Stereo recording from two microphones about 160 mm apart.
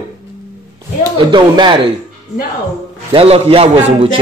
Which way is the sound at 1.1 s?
30° right (ahead or behind).